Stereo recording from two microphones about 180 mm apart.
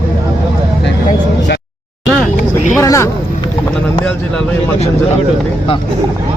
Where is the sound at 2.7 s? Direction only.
15° left (ahead or behind).